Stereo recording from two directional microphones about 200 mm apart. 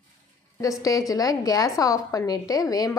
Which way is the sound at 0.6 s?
15° left (ahead or behind).